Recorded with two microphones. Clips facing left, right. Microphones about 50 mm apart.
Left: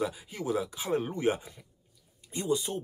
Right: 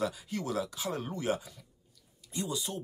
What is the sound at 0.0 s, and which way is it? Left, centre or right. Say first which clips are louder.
Speech: left 1 dB; centre.